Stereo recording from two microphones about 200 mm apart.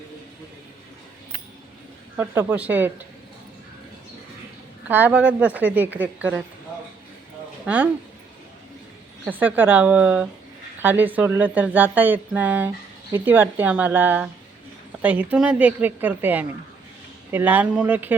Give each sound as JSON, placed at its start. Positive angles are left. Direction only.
{"t": 2.1, "sound": "speech", "side_deg": -10}
{"t": 4.9, "sound": "speech", "side_deg": -10}
{"t": 7.6, "sound": "speech", "side_deg": -5}
{"t": 9.2, "sound": "speech", "side_deg": -10}